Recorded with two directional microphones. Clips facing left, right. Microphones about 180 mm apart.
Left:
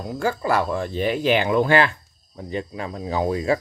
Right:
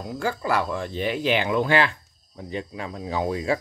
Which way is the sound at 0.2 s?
45° left (ahead or behind).